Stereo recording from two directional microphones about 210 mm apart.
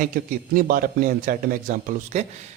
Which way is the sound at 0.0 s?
40° right (ahead or behind).